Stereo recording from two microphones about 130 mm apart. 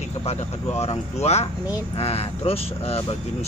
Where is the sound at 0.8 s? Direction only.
55° left (ahead or behind).